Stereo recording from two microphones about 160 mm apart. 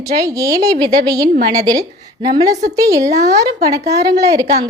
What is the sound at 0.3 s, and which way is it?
A woman's voice, 20° right (ahead or behind).